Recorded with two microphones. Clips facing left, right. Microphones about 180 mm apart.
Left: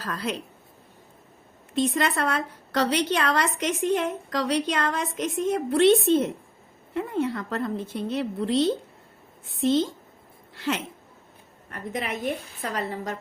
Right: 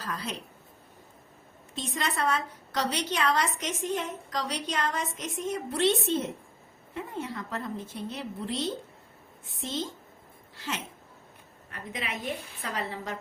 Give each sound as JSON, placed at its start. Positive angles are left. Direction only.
{"t": 0.0, "sound": "a woman's voice", "side_deg": 65}
{"t": 1.7, "sound": "a woman's voice", "side_deg": 60}
{"t": 10.5, "sound": "a sound", "side_deg": 65}
{"t": 11.7, "sound": "a woman's voice", "side_deg": 45}